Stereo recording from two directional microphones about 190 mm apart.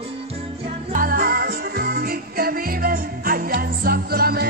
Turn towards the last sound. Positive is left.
turn(degrees=-55)  # may be behind; listen again after turning